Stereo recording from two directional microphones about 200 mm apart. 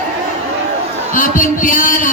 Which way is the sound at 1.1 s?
40° left (ahead or behind).